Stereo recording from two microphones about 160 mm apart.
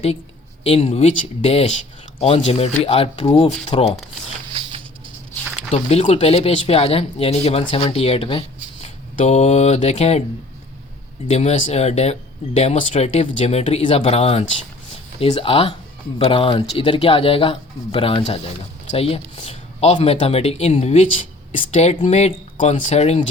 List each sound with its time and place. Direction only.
0.6 s speech: 40° left (ahead or behind)
5.7 s speech: 40° left (ahead or behind)
11.3 s speech: 40° left (ahead or behind)